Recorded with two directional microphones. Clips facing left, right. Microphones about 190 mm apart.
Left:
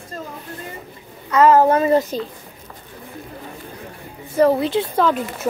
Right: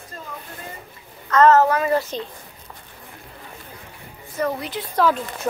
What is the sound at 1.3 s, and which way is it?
Speech, 10° left (ahead or behind).